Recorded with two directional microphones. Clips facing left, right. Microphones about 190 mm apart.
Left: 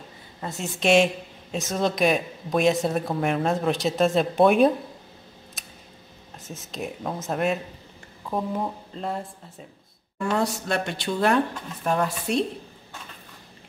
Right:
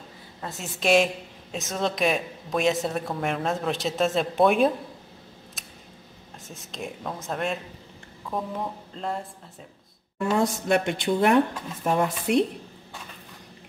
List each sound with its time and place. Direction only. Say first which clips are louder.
0.4 s speech: left 3 dB; centre (ahead or behind)
6.5 s speech: left 3 dB; 5° left (ahead or behind)
10.1 s speech: right 1 dB; 20° right (ahead or behind)